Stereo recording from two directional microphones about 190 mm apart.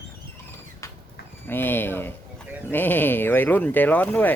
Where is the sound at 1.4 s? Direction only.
10° left (ahead or behind).